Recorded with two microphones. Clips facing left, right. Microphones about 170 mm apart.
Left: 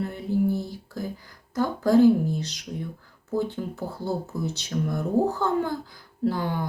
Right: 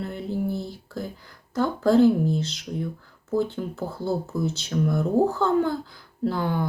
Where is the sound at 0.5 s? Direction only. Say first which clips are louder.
Left 1 dB; 15° left (ahead or behind).